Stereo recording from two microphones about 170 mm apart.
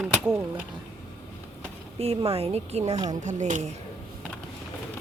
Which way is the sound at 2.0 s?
35° right (ahead or behind).